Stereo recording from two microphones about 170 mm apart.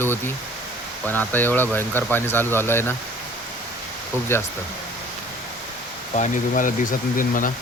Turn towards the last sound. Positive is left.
turn(degrees=50)  # may be behind; listen again after turning